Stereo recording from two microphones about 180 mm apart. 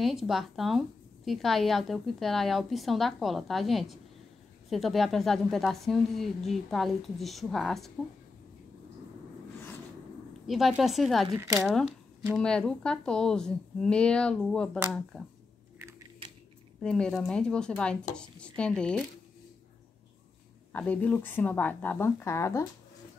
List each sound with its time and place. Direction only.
0.0 s speech: centre (ahead or behind)
10.4 s speech: centre (ahead or behind)
11.3 s speech: 15° right (ahead or behind)
12.4 s speech: 5° left (ahead or behind)
16.8 s speech: 5° left (ahead or behind)
20.7 s speech: 10° left (ahead or behind)